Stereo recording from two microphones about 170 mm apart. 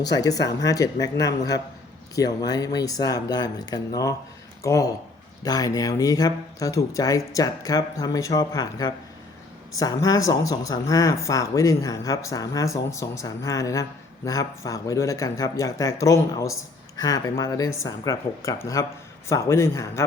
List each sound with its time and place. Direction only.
0.0 s speech: 20° left (ahead or behind)